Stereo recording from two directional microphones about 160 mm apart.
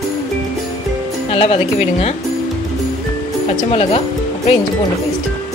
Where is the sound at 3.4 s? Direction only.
35° left (ahead or behind).